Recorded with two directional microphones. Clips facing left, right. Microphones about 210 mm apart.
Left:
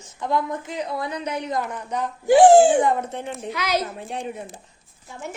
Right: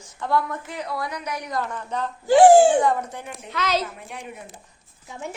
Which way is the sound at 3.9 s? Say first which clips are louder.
Left 7 dB; 30° left (ahead or behind).